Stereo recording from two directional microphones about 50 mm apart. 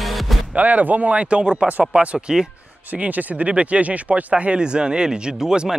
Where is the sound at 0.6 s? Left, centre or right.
Right; by 2.4 s centre.